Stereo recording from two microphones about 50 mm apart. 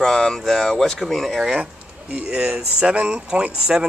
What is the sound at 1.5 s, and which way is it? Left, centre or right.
Speech, right.